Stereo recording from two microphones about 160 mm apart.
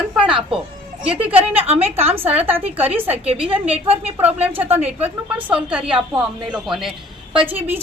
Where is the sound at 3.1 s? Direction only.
40° right (ahead or behind).